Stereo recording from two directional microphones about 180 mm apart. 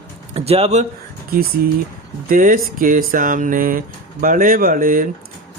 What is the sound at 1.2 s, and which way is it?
Speech, 55° right (ahead or behind).